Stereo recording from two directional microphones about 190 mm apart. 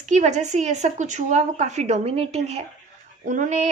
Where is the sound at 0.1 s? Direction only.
40° right (ahead or behind).